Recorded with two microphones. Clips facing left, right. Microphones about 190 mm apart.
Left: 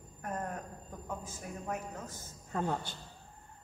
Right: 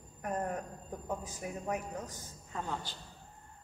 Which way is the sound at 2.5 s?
50° left (ahead or behind).